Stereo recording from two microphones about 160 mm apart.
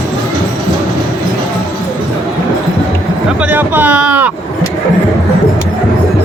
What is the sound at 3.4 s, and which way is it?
Speech, 10° right (ahead or behind).